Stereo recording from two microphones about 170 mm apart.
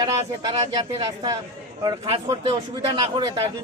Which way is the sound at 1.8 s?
25° right (ahead or behind).